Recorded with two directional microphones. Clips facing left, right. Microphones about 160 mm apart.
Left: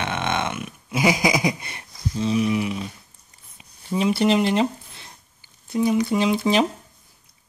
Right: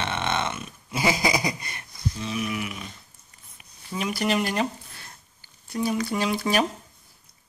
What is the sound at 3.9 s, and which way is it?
Speech, 25° left (ahead or behind).